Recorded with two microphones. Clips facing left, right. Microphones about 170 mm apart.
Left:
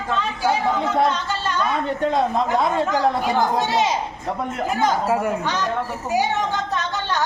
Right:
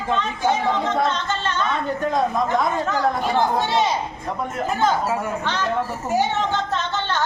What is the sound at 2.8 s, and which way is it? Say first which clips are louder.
A woman's voice: left 1 dB; 15° left (ahead or behind).